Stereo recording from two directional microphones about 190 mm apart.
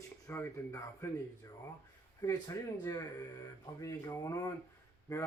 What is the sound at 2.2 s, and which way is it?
Speech, 20° left (ahead or behind).